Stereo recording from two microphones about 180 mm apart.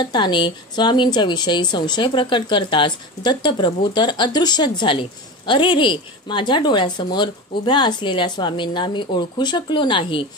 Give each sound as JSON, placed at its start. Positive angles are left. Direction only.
{"t": 0.0, "sound": "a woman's voice", "side_deg": 25}